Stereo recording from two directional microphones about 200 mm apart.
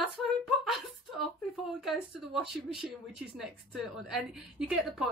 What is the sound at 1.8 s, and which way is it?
A woman's voice, centre (ahead or behind).